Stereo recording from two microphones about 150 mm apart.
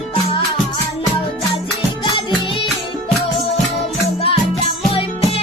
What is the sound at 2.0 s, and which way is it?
Music, 35° left (ahead or behind).